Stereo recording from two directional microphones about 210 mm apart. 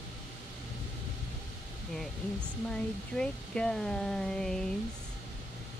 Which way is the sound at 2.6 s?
5° left (ahead or behind).